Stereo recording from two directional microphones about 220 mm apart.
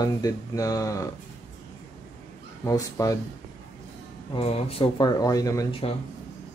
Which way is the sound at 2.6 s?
15° left (ahead or behind).